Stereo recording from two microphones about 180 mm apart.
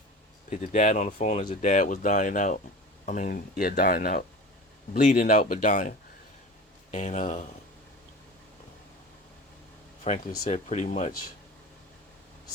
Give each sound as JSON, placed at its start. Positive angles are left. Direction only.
{"t": 0.5, "sound": "speech", "side_deg": 40}
{"t": 4.9, "sound": "speech", "side_deg": 45}
{"t": 6.9, "sound": "speech", "side_deg": 40}
{"t": 10.1, "sound": "speech", "side_deg": 35}